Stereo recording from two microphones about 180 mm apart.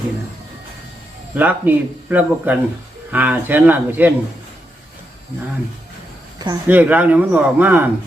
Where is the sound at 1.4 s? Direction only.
10° right (ahead or behind).